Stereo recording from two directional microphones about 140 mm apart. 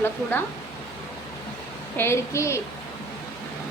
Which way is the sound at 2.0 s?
20° left (ahead or behind).